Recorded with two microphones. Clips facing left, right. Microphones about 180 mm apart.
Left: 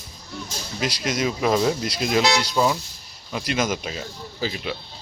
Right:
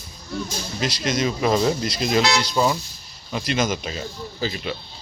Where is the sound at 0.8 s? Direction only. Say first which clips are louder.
Right 1 dB; 10° left (ahead or behind).